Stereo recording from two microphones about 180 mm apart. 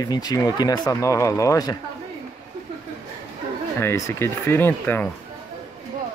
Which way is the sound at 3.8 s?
15° left (ahead or behind).